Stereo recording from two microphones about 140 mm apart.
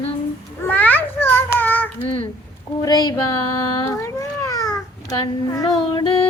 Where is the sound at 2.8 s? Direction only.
30° left (ahead or behind).